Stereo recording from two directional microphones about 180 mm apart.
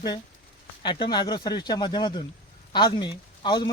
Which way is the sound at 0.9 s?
25° left (ahead or behind).